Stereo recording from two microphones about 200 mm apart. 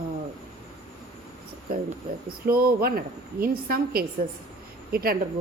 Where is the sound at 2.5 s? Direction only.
50° right (ahead or behind).